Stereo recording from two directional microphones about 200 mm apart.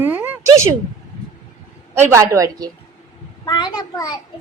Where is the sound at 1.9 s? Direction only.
10° right (ahead or behind).